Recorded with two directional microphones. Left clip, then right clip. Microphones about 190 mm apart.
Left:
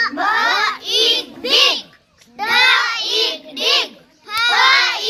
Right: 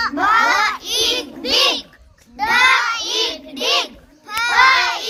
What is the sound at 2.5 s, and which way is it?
Child singing, 70° right (ahead or behind).